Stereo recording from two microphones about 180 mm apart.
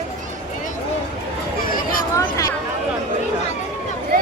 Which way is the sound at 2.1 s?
15° left (ahead or behind).